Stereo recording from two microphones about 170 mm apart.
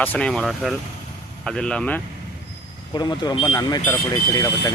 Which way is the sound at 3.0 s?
25° left (ahead or behind).